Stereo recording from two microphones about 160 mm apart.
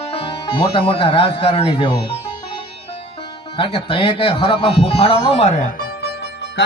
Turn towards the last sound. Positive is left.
turn(degrees=90)